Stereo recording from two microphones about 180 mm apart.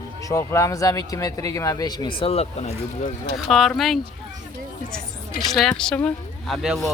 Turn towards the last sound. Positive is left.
turn(degrees=0)  # may be behind; listen again after turning